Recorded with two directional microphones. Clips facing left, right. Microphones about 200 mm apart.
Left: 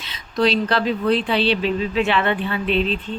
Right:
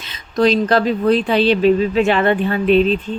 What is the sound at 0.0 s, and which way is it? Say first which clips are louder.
Speech: right 4 dB; 45° right (ahead or behind).